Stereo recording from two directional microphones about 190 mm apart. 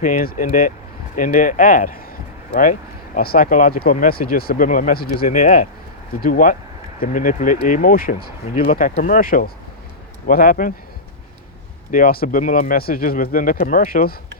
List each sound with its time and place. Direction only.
0.0 s speech: 45° left (ahead or behind)
3.2 s speech: 50° left (ahead or behind)
11.9 s speech: 50° left (ahead or behind)